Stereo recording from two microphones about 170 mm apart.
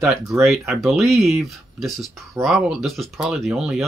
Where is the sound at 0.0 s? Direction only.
Centre (ahead or behind).